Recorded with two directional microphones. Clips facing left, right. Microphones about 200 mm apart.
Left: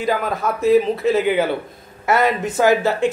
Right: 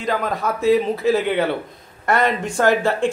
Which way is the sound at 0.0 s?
Centre (ahead or behind).